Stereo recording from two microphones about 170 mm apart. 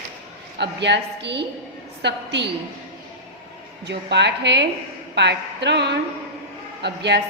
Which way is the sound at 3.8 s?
90° right.